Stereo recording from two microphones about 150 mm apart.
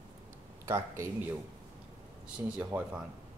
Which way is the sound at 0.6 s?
20° right (ahead or behind).